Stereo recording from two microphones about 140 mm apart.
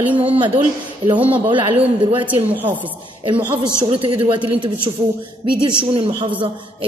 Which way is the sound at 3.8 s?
40° right (ahead or behind).